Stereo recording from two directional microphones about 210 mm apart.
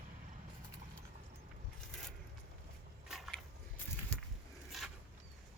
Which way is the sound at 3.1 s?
Centre (ahead or behind).